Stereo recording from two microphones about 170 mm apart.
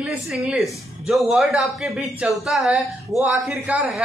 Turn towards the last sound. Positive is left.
turn(degrees=-5)  # may be behind; listen again after turning